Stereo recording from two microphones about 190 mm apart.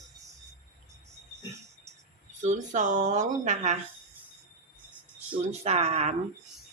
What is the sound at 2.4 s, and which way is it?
Speech, 40° right (ahead or behind).